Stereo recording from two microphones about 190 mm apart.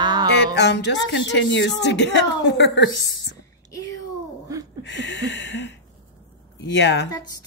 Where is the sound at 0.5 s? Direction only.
65° left (ahead or behind).